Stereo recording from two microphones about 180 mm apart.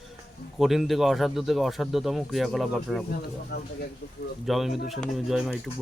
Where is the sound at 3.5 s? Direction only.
65° left (ahead or behind).